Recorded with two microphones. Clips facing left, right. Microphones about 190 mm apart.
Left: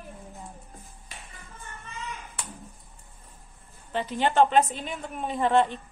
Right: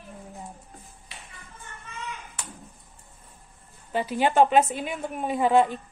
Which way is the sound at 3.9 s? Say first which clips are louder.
Right 2 dB; 10° right (ahead or behind).